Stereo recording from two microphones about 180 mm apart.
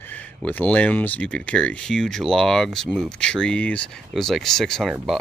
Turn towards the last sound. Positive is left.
turn(degrees=0)  # may be behind; listen again after turning